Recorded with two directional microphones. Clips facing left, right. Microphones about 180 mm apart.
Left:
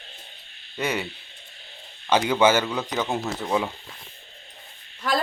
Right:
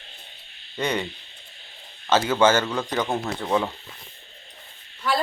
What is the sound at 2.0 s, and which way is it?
Speech, 15° left (ahead or behind).